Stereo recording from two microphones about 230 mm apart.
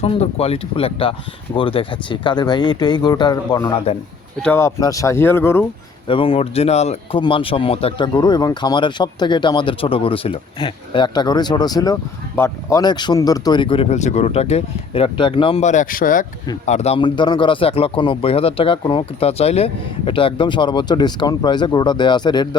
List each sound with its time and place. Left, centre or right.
0.0 s speech: left; by 5.6 s centre
6.1 s speech: left